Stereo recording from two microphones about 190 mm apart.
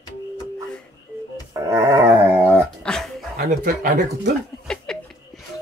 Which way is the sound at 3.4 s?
45° right (ahead or behind).